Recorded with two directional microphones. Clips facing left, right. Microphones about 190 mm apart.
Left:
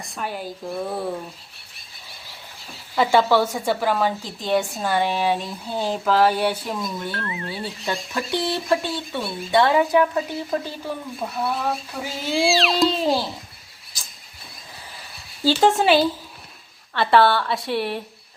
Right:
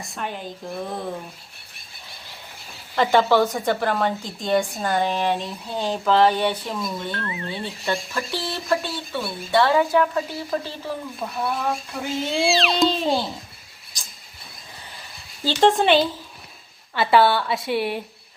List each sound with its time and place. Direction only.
0.0 s a woman's voice: centre (ahead or behind)
2.9 s a woman's voice: 5° left (ahead or behind)
8.3 s speech: 20° left (ahead or behind)
11.2 s a woman's voice: 5° left (ahead or behind)
15.4 s a woman's voice: 5° left (ahead or behind)